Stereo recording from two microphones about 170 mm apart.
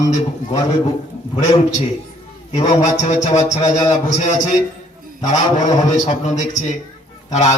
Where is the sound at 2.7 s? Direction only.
45° left (ahead or behind).